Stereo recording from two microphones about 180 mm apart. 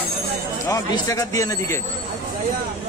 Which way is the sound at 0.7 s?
20° left (ahead or behind).